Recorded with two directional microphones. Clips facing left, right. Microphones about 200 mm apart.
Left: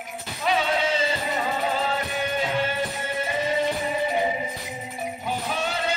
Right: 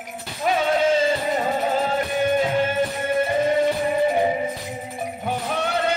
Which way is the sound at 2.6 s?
50° right (ahead or behind).